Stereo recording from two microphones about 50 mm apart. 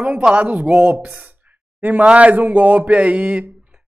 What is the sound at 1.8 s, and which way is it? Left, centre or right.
Speech, right.